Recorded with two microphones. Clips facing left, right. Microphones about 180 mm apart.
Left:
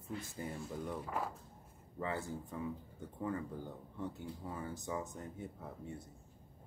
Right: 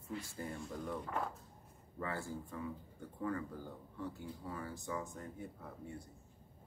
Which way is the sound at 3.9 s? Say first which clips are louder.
Left 1 dB; 20° left (ahead or behind).